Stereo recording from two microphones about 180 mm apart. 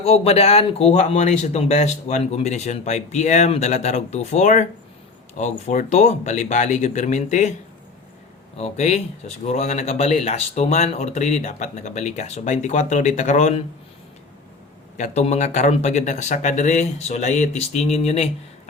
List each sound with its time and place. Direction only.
0.0 s speech: 35° left (ahead or behind)
8.5 s speech: 35° left (ahead or behind)
14.9 s speech: 40° left (ahead or behind)